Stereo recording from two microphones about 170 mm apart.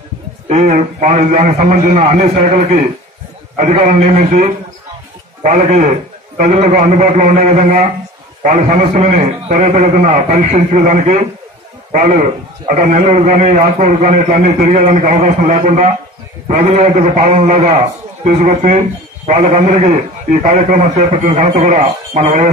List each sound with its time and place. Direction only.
0.5 s a man's voice: 45° right (ahead or behind)
3.5 s a man's voice: 45° right (ahead or behind)